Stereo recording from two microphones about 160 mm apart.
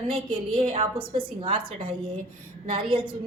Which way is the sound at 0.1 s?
30° right (ahead or behind).